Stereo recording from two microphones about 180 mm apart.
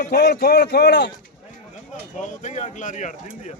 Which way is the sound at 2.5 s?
40° left (ahead or behind).